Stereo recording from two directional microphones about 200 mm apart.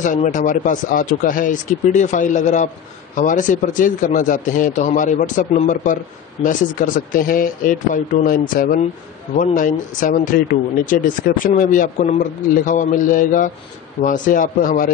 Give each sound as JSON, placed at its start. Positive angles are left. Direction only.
{"t": 0.0, "sound": "speech", "side_deg": 40}